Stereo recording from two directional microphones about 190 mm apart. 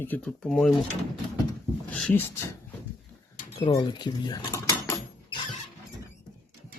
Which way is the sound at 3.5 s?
25° left (ahead or behind).